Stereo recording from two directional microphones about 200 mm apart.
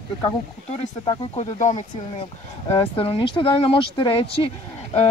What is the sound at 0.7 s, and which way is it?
Speech, 25° left (ahead or behind).